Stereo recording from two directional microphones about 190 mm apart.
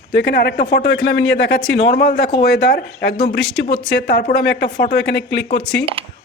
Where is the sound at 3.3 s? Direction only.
5° left (ahead or behind).